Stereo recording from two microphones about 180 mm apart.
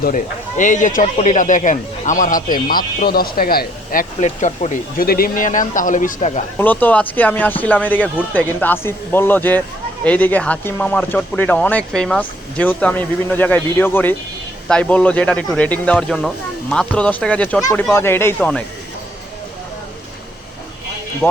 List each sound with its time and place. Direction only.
0.0 s speech: 45° left (ahead or behind)
4.2 s speech: 40° left (ahead or behind)
6.6 s speech: 10° left (ahead or behind)